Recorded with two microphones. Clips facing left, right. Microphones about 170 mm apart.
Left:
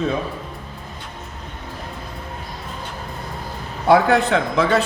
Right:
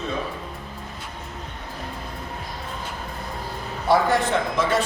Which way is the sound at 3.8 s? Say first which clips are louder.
Left 5 dB; 65° left (ahead or behind).